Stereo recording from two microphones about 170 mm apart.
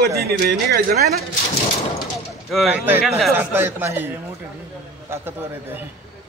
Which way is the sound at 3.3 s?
15° right (ahead or behind).